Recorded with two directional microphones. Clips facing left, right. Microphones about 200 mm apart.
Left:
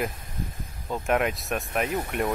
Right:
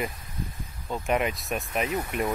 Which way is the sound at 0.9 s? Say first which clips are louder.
Left 1 dB; centre (ahead or behind).